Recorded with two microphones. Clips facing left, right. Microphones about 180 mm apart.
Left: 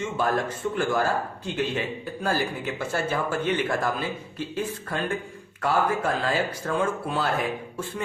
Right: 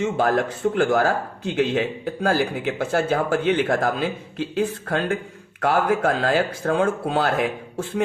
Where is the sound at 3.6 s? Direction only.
55° right (ahead or behind).